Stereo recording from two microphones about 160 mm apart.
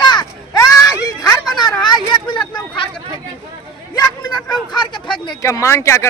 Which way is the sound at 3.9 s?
25° left (ahead or behind).